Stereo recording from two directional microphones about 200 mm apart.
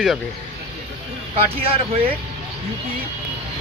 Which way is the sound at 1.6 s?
30° right (ahead or behind).